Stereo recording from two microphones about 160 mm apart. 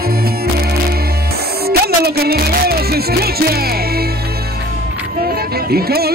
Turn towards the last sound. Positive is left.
turn(degrees=-75)  # may be behind; listen again after turning